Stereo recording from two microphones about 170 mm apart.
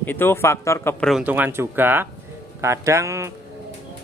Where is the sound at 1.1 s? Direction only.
5° right (ahead or behind).